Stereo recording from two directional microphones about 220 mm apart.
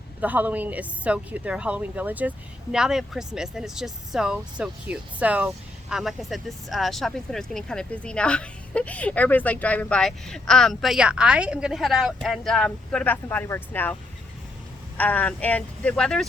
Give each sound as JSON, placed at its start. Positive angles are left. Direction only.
{"t": 0.2, "sound": "speech", "side_deg": -5}
{"t": 14.9, "sound": "speech", "side_deg": 5}